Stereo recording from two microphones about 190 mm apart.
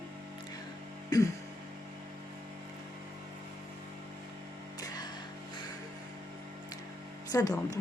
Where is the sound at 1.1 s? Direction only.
20° left (ahead or behind).